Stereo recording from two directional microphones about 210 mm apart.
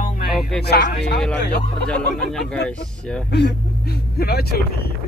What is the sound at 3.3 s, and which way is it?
Speech, 50° left (ahead or behind).